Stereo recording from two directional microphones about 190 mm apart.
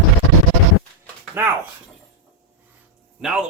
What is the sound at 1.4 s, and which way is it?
Speech, 10° right (ahead or behind).